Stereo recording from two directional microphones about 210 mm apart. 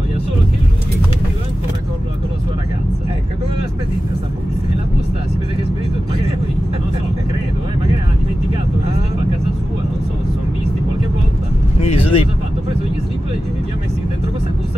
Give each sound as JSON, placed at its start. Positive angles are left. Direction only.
{"t": 11.8, "sound": "vehicle", "side_deg": 30}